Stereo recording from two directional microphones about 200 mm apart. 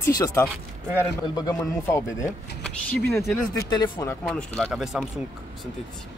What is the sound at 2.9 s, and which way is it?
Speech, 5° left (ahead or behind).